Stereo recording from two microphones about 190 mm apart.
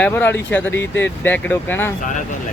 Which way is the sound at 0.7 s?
75° left (ahead or behind).